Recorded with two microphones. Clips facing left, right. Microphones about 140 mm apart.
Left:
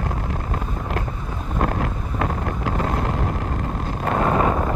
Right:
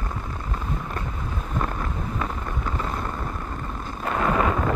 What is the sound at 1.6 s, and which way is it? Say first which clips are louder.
Wind noise: left 5 dB; 65° left (ahead or behind).